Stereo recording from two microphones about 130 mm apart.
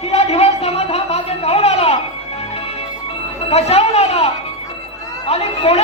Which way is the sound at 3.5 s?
50° left (ahead or behind).